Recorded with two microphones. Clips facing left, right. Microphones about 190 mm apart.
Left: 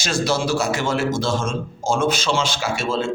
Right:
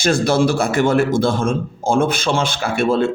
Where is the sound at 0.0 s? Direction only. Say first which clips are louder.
Right 6 dB; 55° right (ahead or behind).